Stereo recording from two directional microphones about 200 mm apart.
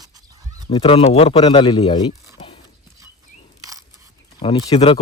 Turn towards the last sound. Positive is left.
turn(degrees=25)  # may be behind; listen again after turning